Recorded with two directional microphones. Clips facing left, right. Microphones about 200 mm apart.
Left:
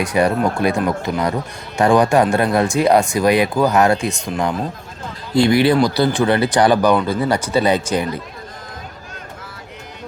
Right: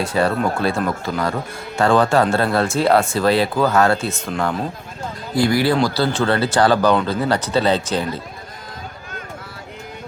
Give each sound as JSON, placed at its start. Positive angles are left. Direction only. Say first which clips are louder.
{"t": 0.0, "sound": "speech", "louder": "left 2 dB", "side_deg": 15}